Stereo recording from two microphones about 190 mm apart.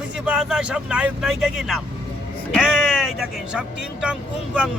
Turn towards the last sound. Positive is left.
turn(degrees=-5)  # may be behind; listen again after turning